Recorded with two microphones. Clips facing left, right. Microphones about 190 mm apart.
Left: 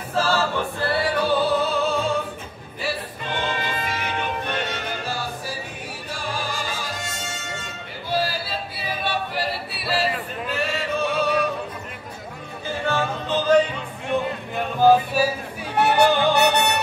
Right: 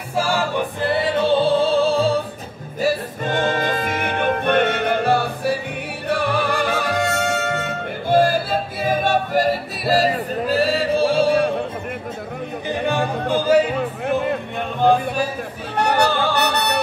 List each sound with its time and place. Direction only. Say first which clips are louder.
0.1 s music: right 1 dB; 15° right (ahead or behind); by 2.1 s 30° right (ahead or behind)
2.8 s music: right 8 dB; 45° right (ahead or behind); by 11.5 s 30° right (ahead or behind)
12.6 s music: right 3 dB; 15° right (ahead or behind)
14.8 s a sound: left 1 dB; 5° left (ahead or behind)
16.0 s music: left 4 dB; 20° left (ahead or behind)